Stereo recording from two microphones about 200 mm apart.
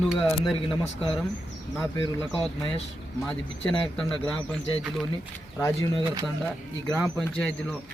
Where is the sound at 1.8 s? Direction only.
20° left (ahead or behind).